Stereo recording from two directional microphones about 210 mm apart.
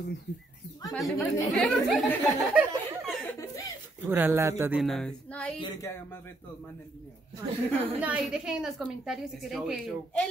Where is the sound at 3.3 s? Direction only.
15° left (ahead or behind).